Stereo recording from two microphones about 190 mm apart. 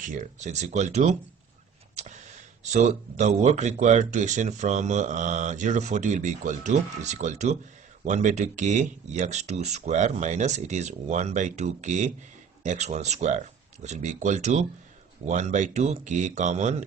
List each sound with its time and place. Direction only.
0.0 s speech: 45° right (ahead or behind)
2.7 s speech: 35° right (ahead or behind)